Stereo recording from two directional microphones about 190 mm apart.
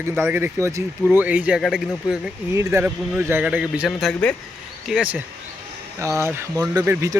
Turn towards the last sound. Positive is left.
turn(degrees=-15)  # may be behind; listen again after turning